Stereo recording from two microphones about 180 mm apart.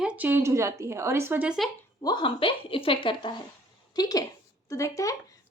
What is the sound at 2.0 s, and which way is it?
A woman's voice, 25° left (ahead or behind).